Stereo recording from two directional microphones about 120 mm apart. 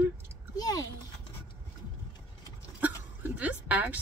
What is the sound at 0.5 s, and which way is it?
Speech, 30° left (ahead or behind).